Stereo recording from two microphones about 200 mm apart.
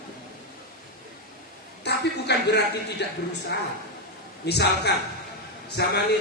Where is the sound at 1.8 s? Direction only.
55° left (ahead or behind).